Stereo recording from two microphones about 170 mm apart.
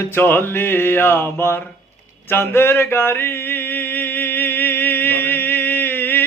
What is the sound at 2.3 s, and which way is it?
Mantra, 15° left (ahead or behind).